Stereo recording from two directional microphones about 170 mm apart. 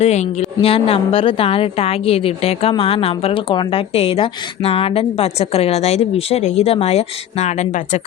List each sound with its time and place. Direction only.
0.0 s a woman's voice: 40° left (ahead or behind)